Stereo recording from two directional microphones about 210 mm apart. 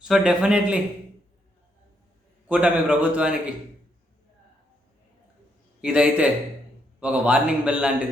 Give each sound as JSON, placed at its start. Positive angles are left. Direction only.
{"t": 0.0, "sound": "a man's voice", "side_deg": -5}
{"t": 2.5, "sound": "a man's voice", "side_deg": -5}
{"t": 5.8, "sound": "a man's voice", "side_deg": -5}